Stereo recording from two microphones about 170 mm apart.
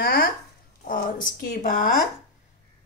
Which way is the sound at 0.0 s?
60° left (ahead or behind).